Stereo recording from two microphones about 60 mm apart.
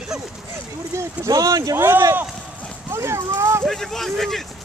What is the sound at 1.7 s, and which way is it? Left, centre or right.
Speech, right.